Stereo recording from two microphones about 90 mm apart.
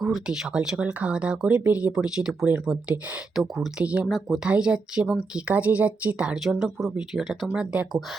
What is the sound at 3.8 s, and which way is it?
Speech, 15° right (ahead or behind).